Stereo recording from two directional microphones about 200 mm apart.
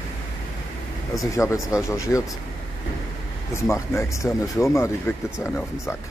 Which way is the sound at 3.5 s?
15° left (ahead or behind).